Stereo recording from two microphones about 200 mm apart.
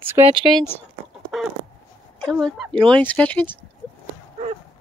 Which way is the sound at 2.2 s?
Centre (ahead or behind).